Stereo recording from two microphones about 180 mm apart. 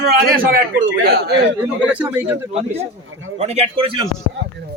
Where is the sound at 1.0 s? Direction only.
65° right (ahead or behind).